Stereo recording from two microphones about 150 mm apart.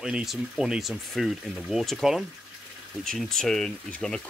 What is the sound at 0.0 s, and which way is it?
Speech, 5° right (ahead or behind).